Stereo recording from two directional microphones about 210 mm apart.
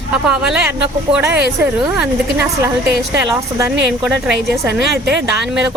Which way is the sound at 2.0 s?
10° right (ahead or behind).